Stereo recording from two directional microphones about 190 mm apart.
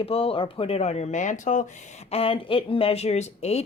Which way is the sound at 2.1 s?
30° left (ahead or behind).